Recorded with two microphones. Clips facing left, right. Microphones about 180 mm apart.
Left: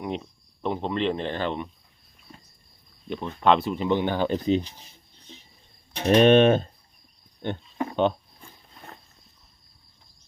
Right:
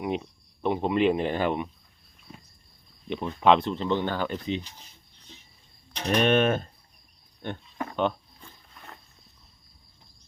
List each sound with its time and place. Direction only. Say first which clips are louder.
0.0 s speech: right 2 dB; 5° right (ahead or behind)
3.1 s speech: even; centre (ahead or behind); by 4.3 s 15° left (ahead or behind)
4.3 s speech: left 7 dB; 40° left (ahead or behind)
6.1 s mechanisms: left 6 dB; 30° left (ahead or behind)
7.4 s a sound: left 5 dB; 20° left (ahead or behind)